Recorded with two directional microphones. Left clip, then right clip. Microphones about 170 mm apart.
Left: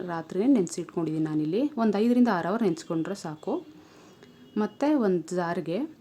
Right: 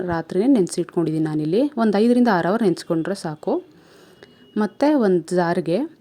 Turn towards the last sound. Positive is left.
turn(degrees=-35)  # may be behind; listen again after turning